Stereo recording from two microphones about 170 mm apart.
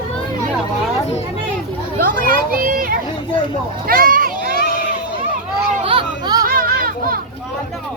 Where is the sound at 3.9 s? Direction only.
55° right (ahead or behind).